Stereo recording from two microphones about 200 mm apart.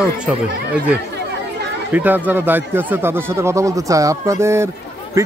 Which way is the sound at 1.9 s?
10° right (ahead or behind).